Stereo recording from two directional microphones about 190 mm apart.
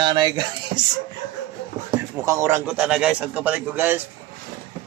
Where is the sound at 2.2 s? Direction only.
15° right (ahead or behind).